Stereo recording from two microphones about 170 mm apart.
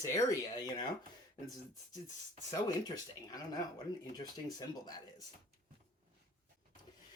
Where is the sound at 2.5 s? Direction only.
20° left (ahead or behind).